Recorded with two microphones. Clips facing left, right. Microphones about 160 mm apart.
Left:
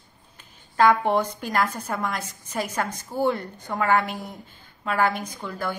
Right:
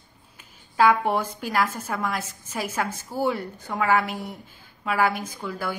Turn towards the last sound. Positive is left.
turn(degrees=-5)  # may be behind; listen again after turning